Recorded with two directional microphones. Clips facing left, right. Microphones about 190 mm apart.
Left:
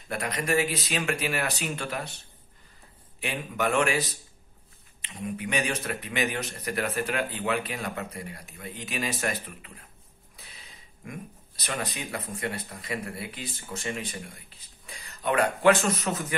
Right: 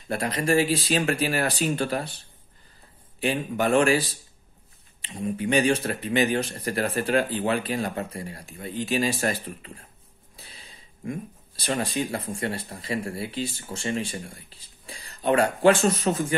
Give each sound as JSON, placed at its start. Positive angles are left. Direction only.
{"t": 0.1, "sound": "speech", "side_deg": -30}
{"t": 10.3, "sound": "a sound", "side_deg": -30}
{"t": 11.1, "sound": "speech", "side_deg": -30}